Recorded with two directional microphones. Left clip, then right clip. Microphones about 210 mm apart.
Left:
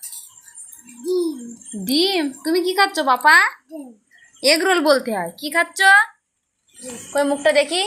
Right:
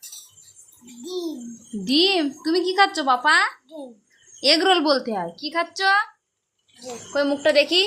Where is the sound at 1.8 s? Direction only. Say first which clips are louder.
Even; centre (ahead or behind).